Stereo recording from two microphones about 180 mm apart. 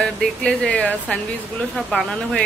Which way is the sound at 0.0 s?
5° left (ahead or behind).